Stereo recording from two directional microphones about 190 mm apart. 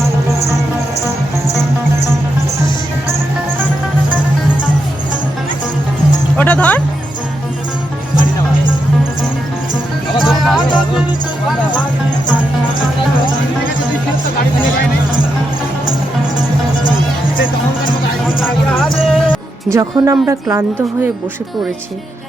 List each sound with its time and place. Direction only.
6.3 s speech: 10° left (ahead or behind)
10.2 s music: centre (ahead or behind)
18.3 s music: centre (ahead or behind)
19.7 s a woman's voice: 15° right (ahead or behind)